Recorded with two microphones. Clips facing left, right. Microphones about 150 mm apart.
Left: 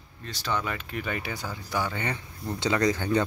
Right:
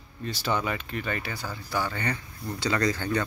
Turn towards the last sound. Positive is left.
turn(degrees=15)  # may be behind; listen again after turning